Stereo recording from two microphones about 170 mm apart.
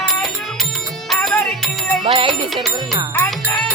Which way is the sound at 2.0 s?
35° right (ahead or behind).